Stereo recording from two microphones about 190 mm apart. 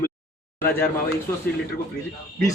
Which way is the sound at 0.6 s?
10° left (ahead or behind).